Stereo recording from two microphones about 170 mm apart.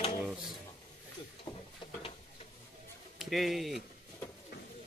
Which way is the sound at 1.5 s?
20° left (ahead or behind).